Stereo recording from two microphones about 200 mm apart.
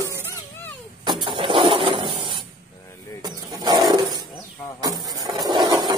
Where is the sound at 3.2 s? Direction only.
20° right (ahead or behind).